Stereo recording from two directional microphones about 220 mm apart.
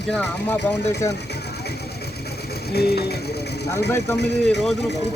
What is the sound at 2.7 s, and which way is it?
Speech, 45° left (ahead or behind).